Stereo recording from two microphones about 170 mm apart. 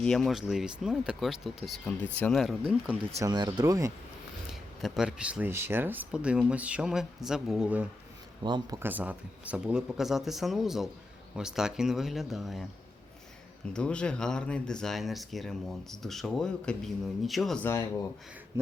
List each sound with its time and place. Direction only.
0.0 s speech: centre (ahead or behind)
3.2 s speech: 25° right (ahead or behind)
4.8 s speech: 5° right (ahead or behind)
8.4 s speech: 25° right (ahead or behind)
8.8 s speech: 10° right (ahead or behind)
13.7 s speech: 5° left (ahead or behind)